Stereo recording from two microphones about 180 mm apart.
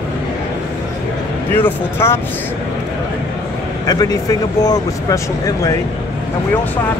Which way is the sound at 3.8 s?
20° left (ahead or behind).